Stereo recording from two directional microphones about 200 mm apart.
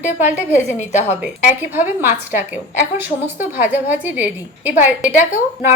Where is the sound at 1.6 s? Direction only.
10° right (ahead or behind).